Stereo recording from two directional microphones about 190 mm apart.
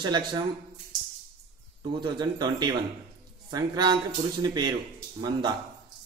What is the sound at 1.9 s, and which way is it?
Speech, 25° right (ahead or behind).